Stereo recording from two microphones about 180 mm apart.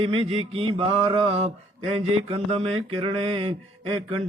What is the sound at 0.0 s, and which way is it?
Mantra, 30° right (ahead or behind).